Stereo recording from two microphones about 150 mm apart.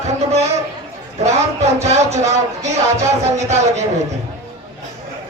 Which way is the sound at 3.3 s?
50° right (ahead or behind).